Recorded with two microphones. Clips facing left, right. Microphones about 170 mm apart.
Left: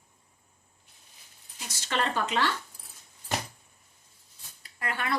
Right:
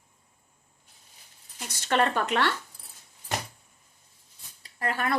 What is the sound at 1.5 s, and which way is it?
Speech, 55° right (ahead or behind).